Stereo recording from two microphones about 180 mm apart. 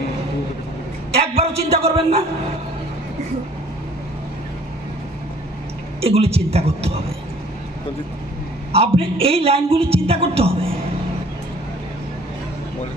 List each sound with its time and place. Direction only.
1.2 s speech: 35° right (ahead or behind)
6.0 s speech: 35° right (ahead or behind)
9.0 s speech: 30° right (ahead or behind)